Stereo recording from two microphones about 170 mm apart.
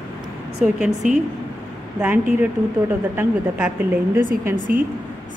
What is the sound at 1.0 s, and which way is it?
A woman's voice, 10° right (ahead or behind).